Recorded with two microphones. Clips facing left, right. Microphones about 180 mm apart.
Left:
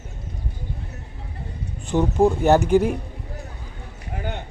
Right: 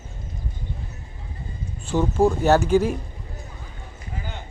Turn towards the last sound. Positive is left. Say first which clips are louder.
# left 5 dB
turn(degrees=60)  # may be behind; listen again after turning